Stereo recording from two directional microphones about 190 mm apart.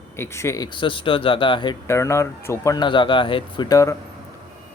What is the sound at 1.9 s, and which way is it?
Speech, 15° left (ahead or behind).